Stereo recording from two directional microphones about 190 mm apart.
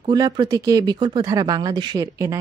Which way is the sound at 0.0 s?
20° right (ahead or behind).